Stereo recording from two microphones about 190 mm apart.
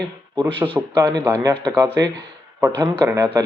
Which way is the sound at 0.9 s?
20° right (ahead or behind).